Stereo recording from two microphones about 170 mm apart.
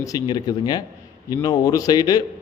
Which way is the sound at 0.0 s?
25° left (ahead or behind).